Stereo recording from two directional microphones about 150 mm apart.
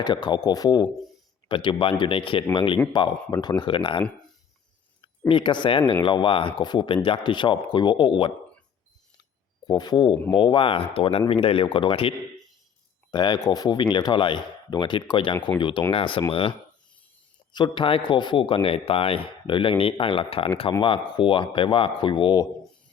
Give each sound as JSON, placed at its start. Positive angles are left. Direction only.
{"t": 0.0, "sound": "a man's voice", "side_deg": 30}
{"t": 5.3, "sound": "a man's voice", "side_deg": 30}
{"t": 9.6, "sound": "a man's voice", "side_deg": 30}